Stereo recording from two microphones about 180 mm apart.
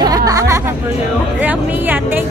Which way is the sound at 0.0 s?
20° right (ahead or behind).